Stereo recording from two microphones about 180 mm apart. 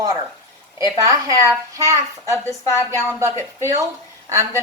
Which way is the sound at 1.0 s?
20° right (ahead or behind).